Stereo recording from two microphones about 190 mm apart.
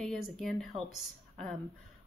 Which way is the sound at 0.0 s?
Centre (ahead or behind).